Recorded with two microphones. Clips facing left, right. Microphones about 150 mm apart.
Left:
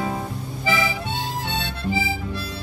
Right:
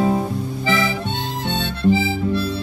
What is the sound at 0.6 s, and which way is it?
Harmonica, 10° left (ahead or behind).